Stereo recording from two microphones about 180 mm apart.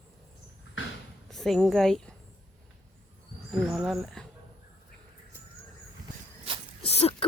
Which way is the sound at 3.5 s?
Centre (ahead or behind).